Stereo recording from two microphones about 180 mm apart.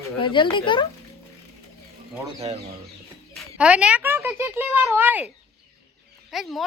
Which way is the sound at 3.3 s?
5° right (ahead or behind).